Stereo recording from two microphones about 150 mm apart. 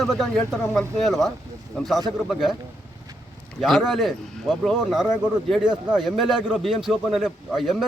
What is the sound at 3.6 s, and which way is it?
Speech, centre (ahead or behind).